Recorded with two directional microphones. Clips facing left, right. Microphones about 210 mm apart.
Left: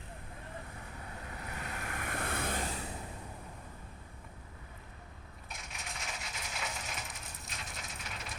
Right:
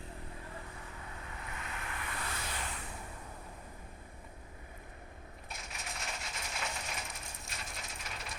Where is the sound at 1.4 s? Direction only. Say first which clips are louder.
Left 3 dB; 40° left (ahead or behind).